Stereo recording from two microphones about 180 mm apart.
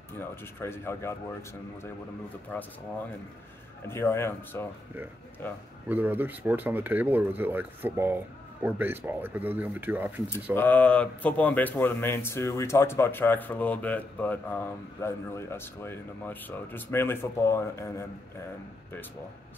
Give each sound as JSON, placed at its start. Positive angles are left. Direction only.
{"t": 0.2, "sound": "speech", "side_deg": 15}
{"t": 3.8, "sound": "speech", "side_deg": 15}
{"t": 5.9, "sound": "speech", "side_deg": -10}
{"t": 10.5, "sound": "speech", "side_deg": 10}